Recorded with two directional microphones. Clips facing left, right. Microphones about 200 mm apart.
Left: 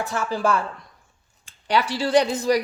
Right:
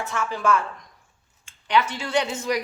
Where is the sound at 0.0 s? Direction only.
35° left (ahead or behind).